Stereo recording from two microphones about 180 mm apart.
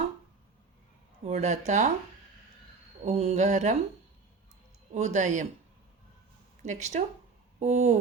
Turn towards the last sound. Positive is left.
turn(degrees=-40)  # may be behind; listen again after turning